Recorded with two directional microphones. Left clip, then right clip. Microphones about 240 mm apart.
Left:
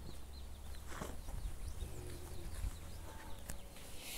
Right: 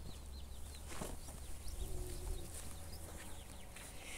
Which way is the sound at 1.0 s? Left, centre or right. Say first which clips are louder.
Even; centre.